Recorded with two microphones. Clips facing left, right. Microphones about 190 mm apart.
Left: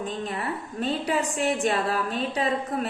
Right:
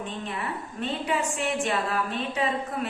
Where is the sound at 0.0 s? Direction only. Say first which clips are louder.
Left 3 dB; 40° left (ahead or behind).